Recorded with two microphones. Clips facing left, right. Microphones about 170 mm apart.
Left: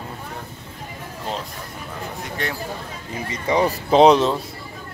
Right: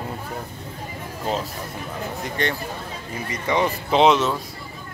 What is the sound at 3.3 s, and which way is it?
Speech, 30° left (ahead or behind).